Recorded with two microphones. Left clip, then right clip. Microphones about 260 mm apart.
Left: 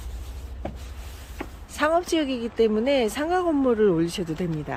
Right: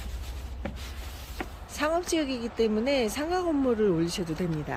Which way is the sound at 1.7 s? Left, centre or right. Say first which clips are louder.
Left 6 dB; centre.